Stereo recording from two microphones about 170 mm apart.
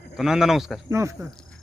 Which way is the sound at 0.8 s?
15° right (ahead or behind).